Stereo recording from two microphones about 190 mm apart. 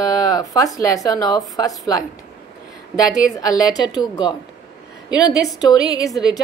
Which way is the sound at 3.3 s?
20° left (ahead or behind).